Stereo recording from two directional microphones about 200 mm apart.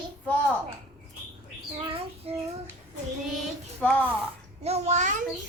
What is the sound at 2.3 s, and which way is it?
Child singing, 30° right (ahead or behind).